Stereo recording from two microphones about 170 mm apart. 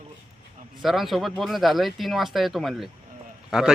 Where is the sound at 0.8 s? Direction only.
Centre (ahead or behind).